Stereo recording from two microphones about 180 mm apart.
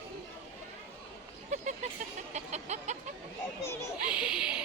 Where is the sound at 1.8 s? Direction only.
40° right (ahead or behind).